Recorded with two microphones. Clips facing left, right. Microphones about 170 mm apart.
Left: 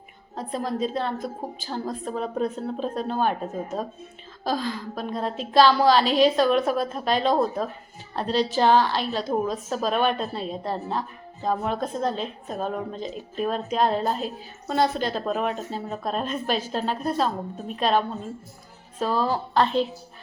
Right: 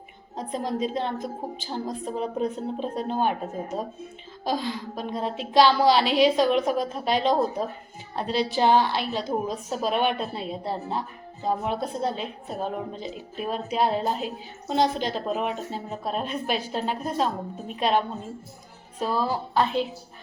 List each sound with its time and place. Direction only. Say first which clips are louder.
0.3 s a woman's voice: left 1 dB; 20° right (ahead or behind)